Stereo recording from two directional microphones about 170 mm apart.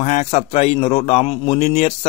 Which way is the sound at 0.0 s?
40° left (ahead or behind).